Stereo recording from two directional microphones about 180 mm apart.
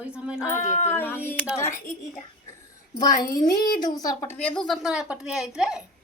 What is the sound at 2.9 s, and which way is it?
A woman's voice, 20° left (ahead or behind).